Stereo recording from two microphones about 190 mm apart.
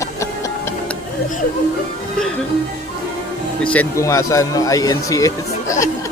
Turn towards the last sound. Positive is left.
turn(degrees=15)  # may be behind; listen again after turning